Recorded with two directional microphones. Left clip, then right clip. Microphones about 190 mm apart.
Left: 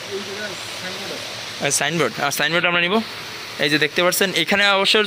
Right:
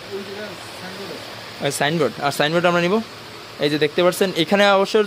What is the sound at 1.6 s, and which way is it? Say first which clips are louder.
Speech: even; 5° right (ahead or behind).